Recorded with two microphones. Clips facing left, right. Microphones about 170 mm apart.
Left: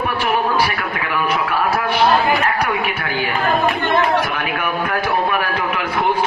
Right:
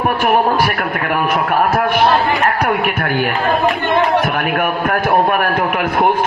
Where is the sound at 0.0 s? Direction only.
50° right (ahead or behind).